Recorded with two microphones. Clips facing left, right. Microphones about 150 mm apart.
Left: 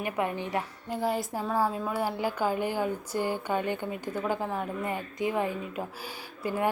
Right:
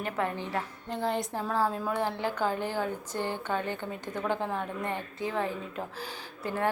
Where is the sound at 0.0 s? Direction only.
15° left (ahead or behind).